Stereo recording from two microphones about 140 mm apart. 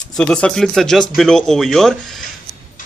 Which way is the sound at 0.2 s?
5° left (ahead or behind).